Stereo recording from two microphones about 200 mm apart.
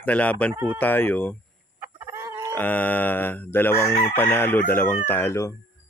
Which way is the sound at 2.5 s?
10° left (ahead or behind).